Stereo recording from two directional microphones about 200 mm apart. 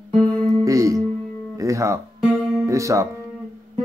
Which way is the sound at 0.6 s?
15° right (ahead or behind).